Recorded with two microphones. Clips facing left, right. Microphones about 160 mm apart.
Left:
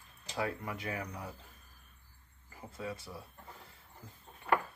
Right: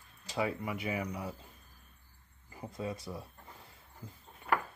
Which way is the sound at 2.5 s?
20° right (ahead or behind).